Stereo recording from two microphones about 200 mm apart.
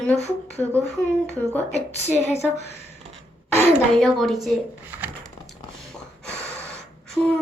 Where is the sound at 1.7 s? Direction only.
35° left (ahead or behind).